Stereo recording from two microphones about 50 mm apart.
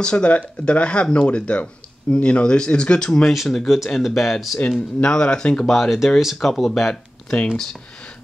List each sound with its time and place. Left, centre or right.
0.0 s speech: left
3.3 s speech: centre
4.6 s speech: left
5.7 s speech: centre